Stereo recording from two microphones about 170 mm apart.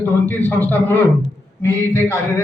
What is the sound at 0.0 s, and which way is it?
A man's voice, 10° left (ahead or behind).